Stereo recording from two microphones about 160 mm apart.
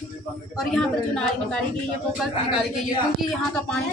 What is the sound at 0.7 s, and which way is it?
Speech, 5° left (ahead or behind).